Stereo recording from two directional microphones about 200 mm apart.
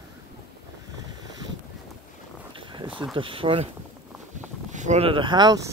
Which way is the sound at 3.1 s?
25° right (ahead or behind).